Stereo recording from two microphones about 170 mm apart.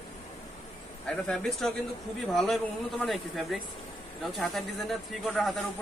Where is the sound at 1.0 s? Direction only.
5° left (ahead or behind).